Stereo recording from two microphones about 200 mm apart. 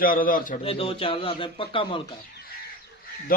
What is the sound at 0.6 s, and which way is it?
A man's voice, 30° left (ahead or behind).